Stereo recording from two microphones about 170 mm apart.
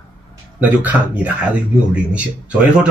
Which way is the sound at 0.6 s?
10° right (ahead or behind).